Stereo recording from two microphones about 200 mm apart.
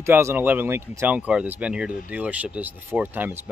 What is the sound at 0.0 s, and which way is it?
Speech, 10° right (ahead or behind).